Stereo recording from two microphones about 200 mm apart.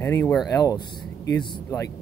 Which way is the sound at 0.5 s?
15° left (ahead or behind).